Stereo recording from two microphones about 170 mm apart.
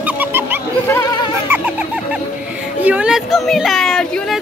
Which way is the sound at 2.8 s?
10° right (ahead or behind).